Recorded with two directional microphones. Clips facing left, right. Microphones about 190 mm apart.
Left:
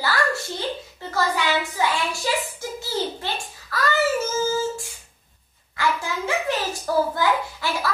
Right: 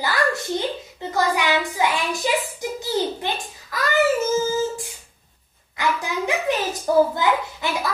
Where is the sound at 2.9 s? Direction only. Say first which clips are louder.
Right 3 dB; 15° right (ahead or behind).